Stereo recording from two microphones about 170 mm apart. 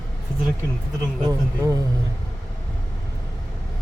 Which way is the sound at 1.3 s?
20° right (ahead or behind).